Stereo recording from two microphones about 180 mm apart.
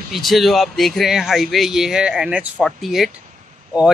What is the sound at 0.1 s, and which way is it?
Speech, centre (ahead or behind).